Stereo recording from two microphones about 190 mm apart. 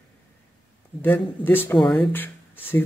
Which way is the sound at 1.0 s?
10° left (ahead or behind).